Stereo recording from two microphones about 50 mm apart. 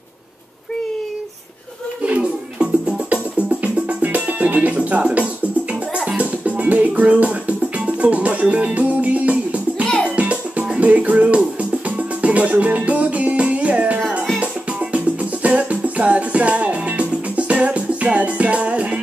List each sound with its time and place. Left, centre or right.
2.0 s music: right
15.4 s music: right